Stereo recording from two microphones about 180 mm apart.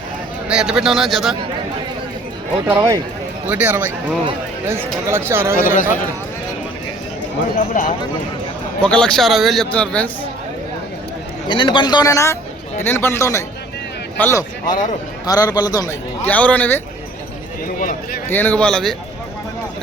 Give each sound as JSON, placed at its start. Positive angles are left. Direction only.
{"t": 0.4, "sound": "a man's voice", "side_deg": -5}
{"t": 2.6, "sound": "speech", "side_deg": -15}
{"t": 5.5, "sound": "speech", "side_deg": 50}
{"t": 7.7, "sound": "speech", "side_deg": 45}
{"t": 8.8, "sound": "a man's voice", "side_deg": 5}
{"t": 11.4, "sound": "a man's voice", "side_deg": 25}
{"t": 16.2, "sound": "speech", "side_deg": 10}
{"t": 17.7, "sound": "speech", "side_deg": 50}
{"t": 18.3, "sound": "a man's voice", "side_deg": 10}